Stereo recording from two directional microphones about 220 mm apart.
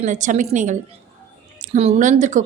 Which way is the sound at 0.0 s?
35° right (ahead or behind).